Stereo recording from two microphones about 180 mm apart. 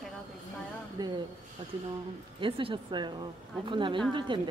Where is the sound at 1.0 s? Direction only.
25° right (ahead or behind).